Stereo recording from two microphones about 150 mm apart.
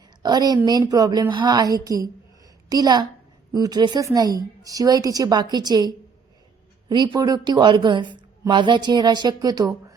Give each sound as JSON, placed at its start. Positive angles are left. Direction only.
{"t": 0.2, "sound": "a woman's voice", "side_deg": -30}